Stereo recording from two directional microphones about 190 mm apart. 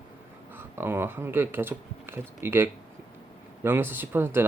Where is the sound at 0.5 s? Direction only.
10° right (ahead or behind).